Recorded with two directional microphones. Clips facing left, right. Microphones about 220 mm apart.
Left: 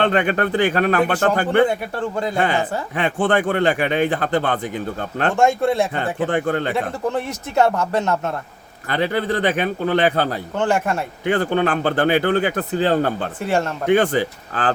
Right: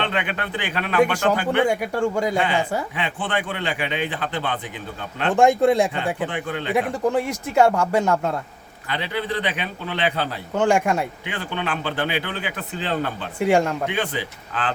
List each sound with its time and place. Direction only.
0.0 s speech: 45° left (ahead or behind)
1.6 s speech: 10° right (ahead or behind)
2.9 s speech: 45° left (ahead or behind)
5.3 s speech: 15° right (ahead or behind)
6.2 s speech: 45° left (ahead or behind)
6.7 s speech: 10° right (ahead or behind)
8.9 s speech: 45° left (ahead or behind)
10.5 s speech: 10° right (ahead or behind)
11.3 s speech: 45° left (ahead or behind)
13.4 s speech: 15° right (ahead or behind)
13.8 s speech: 50° left (ahead or behind)